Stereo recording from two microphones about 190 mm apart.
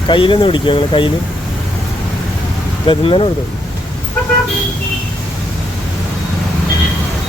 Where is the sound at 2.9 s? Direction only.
30° left (ahead or behind).